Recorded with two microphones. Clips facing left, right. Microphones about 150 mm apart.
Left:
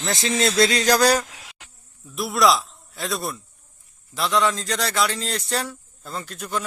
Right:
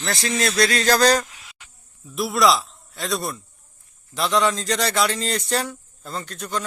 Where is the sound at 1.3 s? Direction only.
90° left.